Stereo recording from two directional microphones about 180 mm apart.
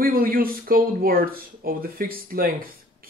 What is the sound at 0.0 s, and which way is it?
Speech, 55° right (ahead or behind).